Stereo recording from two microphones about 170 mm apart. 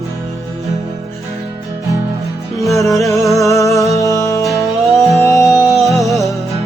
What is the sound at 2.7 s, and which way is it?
Music, 20° left (ahead or behind).